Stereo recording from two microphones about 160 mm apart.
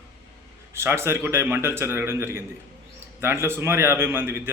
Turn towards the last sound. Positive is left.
turn(degrees=-15)  # may be behind; listen again after turning